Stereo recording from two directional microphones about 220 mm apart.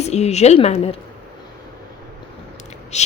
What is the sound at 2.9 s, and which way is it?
Speech, 30° left (ahead or behind).